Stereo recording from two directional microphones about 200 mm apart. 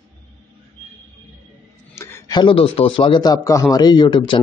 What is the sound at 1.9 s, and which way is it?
A man's voice, 15° left (ahead or behind).